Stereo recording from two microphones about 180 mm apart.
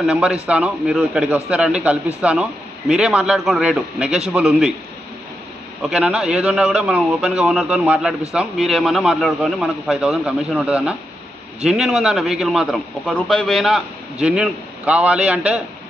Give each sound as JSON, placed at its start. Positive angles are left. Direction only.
{"t": 0.0, "sound": "a man's voice", "side_deg": -5}
{"t": 5.8, "sound": "a man's voice", "side_deg": 0}